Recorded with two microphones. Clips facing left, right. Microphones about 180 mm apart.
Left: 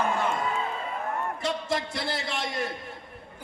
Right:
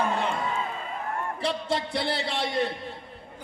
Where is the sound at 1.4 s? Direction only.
30° right (ahead or behind).